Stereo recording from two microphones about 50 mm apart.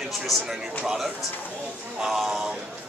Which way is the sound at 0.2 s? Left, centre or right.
Centre.